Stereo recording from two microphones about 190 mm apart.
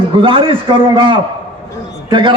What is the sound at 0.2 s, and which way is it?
A man's voice, 25° right (ahead or behind).